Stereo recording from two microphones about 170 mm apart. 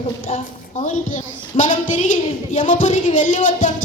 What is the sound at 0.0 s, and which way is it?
A child's voice, 45° left (ahead or behind).